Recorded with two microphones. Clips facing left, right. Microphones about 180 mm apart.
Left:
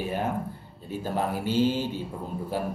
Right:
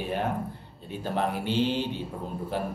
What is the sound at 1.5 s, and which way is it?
Speech, 45° left (ahead or behind).